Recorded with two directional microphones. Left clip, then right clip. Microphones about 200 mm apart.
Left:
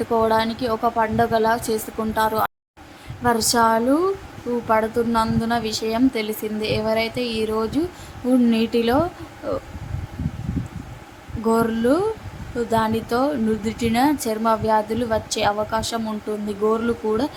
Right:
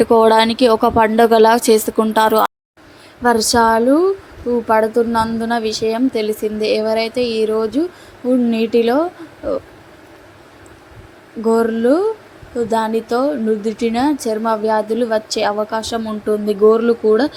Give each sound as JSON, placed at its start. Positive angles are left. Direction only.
{"t": 0.0, "sound": "speech", "side_deg": -30}
{"t": 3.5, "sound": "a woman's voice", "side_deg": -20}
{"t": 11.4, "sound": "a woman's voice", "side_deg": -15}